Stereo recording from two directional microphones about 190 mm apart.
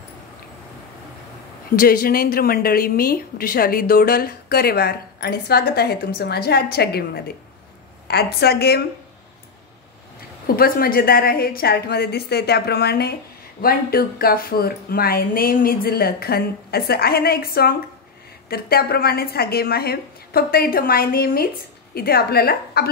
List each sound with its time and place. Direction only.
1.8 s a woman's voice: 50° left (ahead or behind)
10.4 s a woman's voice: 50° left (ahead or behind)